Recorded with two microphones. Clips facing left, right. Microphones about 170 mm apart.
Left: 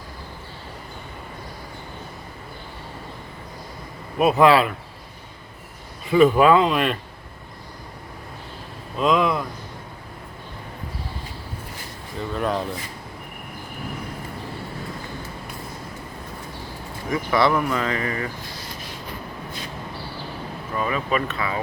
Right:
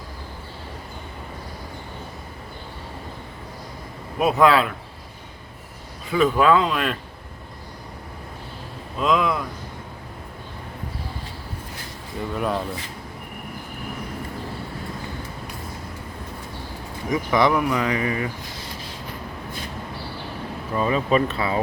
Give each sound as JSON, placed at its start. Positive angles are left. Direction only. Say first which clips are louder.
{"t": 4.2, "sound": "speech", "louder": "left 2 dB", "side_deg": 0}
{"t": 6.1, "sound": "speech", "louder": "left 3 dB", "side_deg": 5}
{"t": 9.0, "sound": "speech", "louder": "left 1 dB", "side_deg": 0}
{"t": 12.3, "sound": "speech", "louder": "left 1 dB", "side_deg": -5}
{"t": 17.1, "sound": "speech", "louder": "right 1 dB", "side_deg": -15}
{"t": 20.7, "sound": "speech", "louder": "right 4 dB", "side_deg": -25}